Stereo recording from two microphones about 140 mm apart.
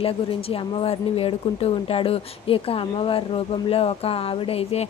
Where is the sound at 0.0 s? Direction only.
40° left (ahead or behind).